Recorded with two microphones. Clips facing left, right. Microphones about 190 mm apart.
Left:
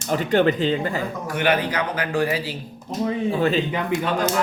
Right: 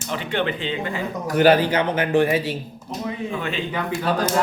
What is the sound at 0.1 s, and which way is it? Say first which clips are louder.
Speech: left 6 dB; 40° left (ahead or behind).